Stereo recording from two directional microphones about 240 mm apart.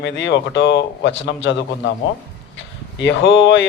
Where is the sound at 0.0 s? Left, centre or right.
Left.